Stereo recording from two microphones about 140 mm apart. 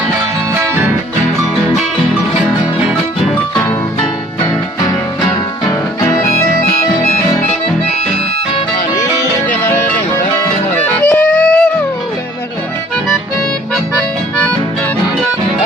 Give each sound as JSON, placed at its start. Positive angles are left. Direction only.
{"t": 6.0, "sound": "music", "side_deg": 20}
{"t": 10.8, "sound": "music", "side_deg": 10}
{"t": 13.9, "sound": "accordion", "side_deg": 10}